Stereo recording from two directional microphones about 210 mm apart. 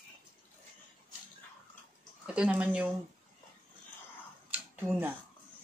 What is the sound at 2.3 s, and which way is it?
Speech, 5° right (ahead or behind).